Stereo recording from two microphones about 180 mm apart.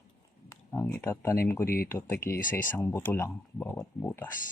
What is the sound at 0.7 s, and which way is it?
Speech, 10° left (ahead or behind).